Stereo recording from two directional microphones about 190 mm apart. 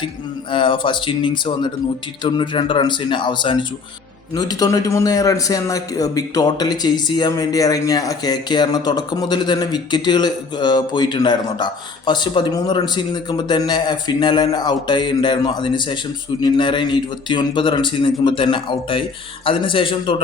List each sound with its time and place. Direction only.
0.5 s a man's voice: 25° left (ahead or behind)